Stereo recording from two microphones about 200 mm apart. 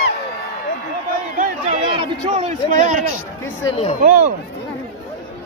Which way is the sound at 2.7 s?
40° right (ahead or behind).